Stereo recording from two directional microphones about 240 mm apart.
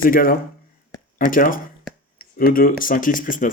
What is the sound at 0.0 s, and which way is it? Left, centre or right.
Speech, left.